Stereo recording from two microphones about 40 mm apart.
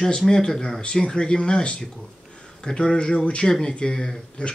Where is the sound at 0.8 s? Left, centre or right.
Left.